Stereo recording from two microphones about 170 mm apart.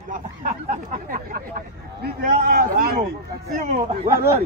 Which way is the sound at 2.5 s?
60° right (ahead or behind).